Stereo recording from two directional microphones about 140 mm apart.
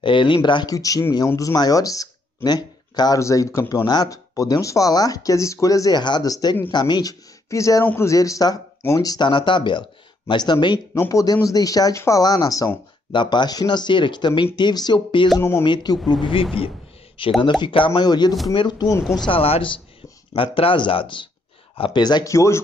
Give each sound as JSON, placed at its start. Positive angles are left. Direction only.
{"t": 0.0, "sound": "speech", "side_deg": 35}
{"t": 15.3, "sound": "speech", "side_deg": 20}
{"t": 15.6, "sound": "speech", "side_deg": 30}
{"t": 19.2, "sound": "speech", "side_deg": 40}